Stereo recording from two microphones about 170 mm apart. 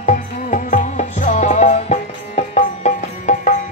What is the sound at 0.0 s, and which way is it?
Music, 50° left (ahead or behind).